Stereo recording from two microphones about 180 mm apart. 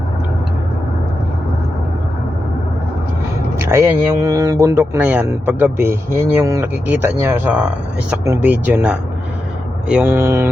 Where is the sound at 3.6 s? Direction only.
15° right (ahead or behind).